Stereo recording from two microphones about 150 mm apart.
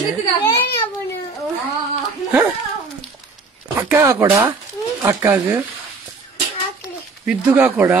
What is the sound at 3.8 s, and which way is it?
Speech, 15° right (ahead or behind).